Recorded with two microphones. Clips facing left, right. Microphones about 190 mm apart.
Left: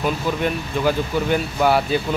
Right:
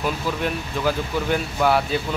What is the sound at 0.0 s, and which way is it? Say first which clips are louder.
Speech: left 3 dB; centre (ahead or behind).